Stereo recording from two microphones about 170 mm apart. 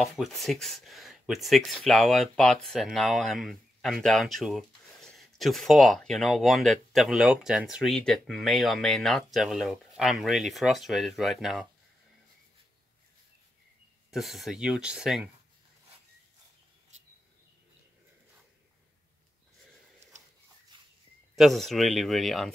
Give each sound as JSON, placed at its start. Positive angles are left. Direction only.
{"t": 0.0, "sound": "speech", "side_deg": 0}
{"t": 14.1, "sound": "speech", "side_deg": 0}
{"t": 20.7, "sound": "a sound", "side_deg": -30}
{"t": 21.4, "sound": "speech", "side_deg": 0}